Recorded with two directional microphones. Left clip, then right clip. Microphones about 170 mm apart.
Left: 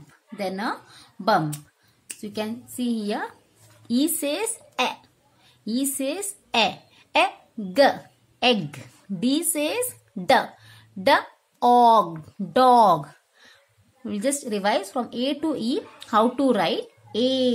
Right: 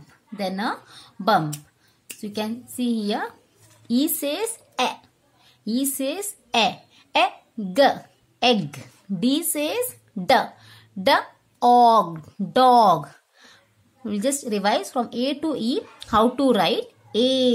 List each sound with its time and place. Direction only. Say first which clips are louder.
0.4 s a woman's voice: right 1 dB; 15° right (ahead or behind)